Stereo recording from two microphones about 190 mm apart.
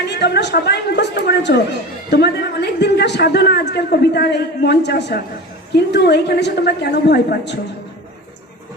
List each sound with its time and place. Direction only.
0.1 s a woman's voice: 65° left (ahead or behind)